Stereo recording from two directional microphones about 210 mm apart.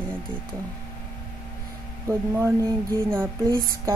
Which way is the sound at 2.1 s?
15° right (ahead or behind).